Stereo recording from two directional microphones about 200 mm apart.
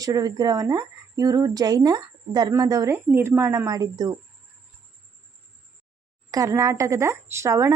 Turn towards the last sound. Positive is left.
turn(degrees=-15)  # may be behind; listen again after turning